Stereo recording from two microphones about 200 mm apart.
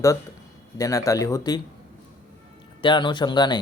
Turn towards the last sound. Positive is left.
turn(degrees=20)  # may be behind; listen again after turning